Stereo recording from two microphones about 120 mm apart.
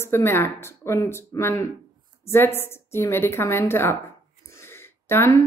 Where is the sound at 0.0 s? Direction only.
20° left (ahead or behind).